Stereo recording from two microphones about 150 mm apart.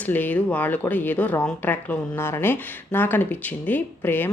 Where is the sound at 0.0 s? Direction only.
10° left (ahead or behind).